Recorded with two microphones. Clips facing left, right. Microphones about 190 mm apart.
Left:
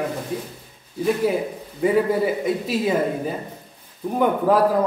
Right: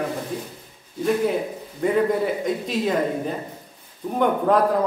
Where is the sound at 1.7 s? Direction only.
5° left (ahead or behind).